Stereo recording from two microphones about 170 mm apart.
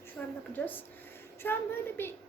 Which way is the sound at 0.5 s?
10° left (ahead or behind).